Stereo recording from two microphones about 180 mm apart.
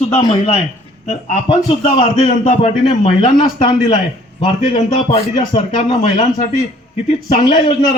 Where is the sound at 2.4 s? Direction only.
45° left (ahead or behind).